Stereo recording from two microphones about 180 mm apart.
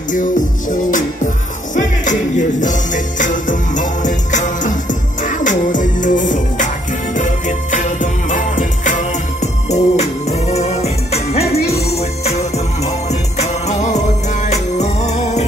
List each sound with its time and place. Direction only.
0.1 s music: 45° left (ahead or behind)